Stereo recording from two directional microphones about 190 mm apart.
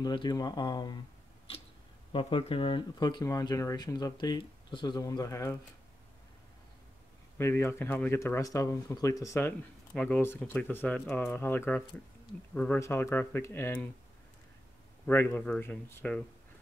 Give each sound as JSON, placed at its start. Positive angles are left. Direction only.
{"t": 0.0, "sound": "speech", "side_deg": 20}
{"t": 2.1, "sound": "speech", "side_deg": 30}
{"t": 7.3, "sound": "speech", "side_deg": 15}
{"t": 15.0, "sound": "speech", "side_deg": 10}